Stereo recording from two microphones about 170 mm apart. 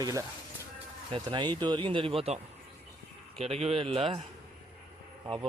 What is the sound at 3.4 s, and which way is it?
Speech, 40° right (ahead or behind).